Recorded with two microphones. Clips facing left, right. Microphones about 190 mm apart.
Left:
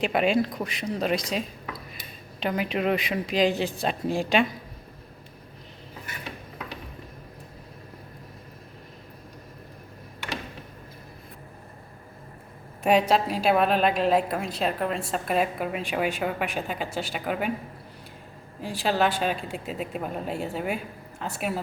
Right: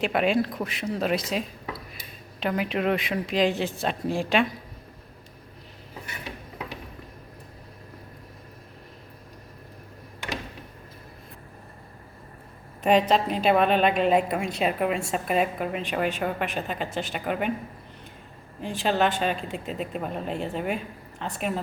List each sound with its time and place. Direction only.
0.0 s a woman's voice: centre (ahead or behind)
12.8 s a woman's voice: 10° left (ahead or behind)
18.6 s a woman's voice: centre (ahead or behind)